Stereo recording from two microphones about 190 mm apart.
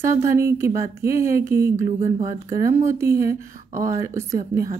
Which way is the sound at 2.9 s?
15° right (ahead or behind).